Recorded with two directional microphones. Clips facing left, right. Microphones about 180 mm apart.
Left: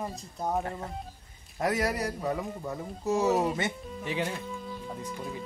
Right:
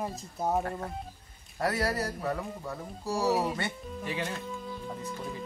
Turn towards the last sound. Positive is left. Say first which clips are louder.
# even
turn(degrees=5)  # may be behind; listen again after turning